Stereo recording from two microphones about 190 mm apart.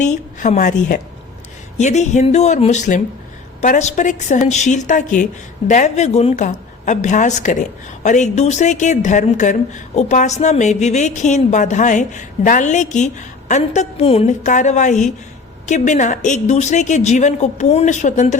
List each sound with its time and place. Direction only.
0.0 s a woman's voice: 40° left (ahead or behind)